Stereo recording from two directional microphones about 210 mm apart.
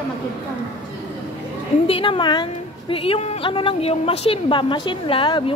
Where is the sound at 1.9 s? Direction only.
25° left (ahead or behind).